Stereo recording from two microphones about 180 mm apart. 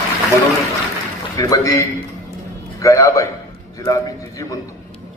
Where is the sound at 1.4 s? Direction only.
20° left (ahead or behind).